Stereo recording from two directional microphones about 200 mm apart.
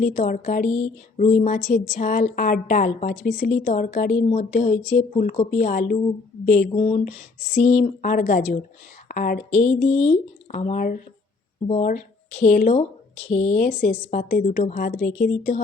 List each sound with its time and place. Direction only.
0.0 s speech: 40° left (ahead or behind)
5.5 s speech: 45° left (ahead or behind)
8.1 s speech: 50° left (ahead or behind)
9.5 s speech: 5° left (ahead or behind)
9.7 s speech: 35° left (ahead or behind)
13.7 s speech: 45° left (ahead or behind)